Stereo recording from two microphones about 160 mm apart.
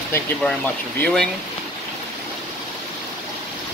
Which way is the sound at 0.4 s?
5° left (ahead or behind).